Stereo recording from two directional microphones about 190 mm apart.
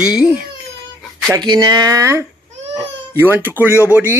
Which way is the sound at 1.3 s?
20° right (ahead or behind).